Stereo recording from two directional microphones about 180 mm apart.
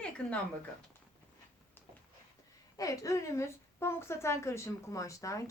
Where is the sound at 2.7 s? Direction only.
20° left (ahead or behind).